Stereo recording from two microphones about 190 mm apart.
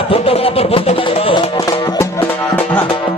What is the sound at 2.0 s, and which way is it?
Music, 10° left (ahead or behind).